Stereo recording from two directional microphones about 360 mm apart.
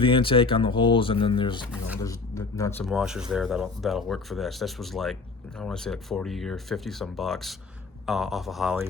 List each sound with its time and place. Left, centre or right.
0.0 s speech: centre